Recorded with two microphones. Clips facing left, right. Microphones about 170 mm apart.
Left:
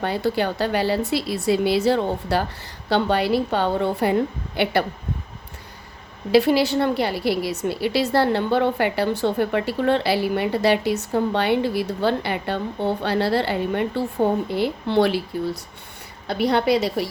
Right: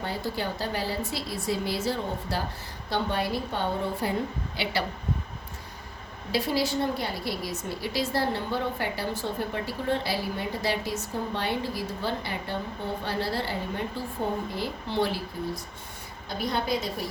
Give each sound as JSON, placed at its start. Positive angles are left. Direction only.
{"t": 0.0, "sound": "a woman's voice", "side_deg": 70}
{"t": 6.3, "sound": "a woman's voice", "side_deg": 70}